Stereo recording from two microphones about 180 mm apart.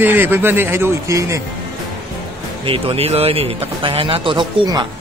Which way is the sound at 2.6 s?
30° right (ahead or behind).